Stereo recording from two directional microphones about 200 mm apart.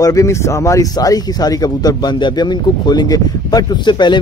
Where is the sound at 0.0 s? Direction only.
15° left (ahead or behind).